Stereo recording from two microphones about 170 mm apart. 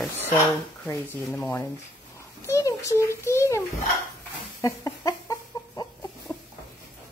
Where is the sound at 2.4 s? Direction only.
20° left (ahead or behind).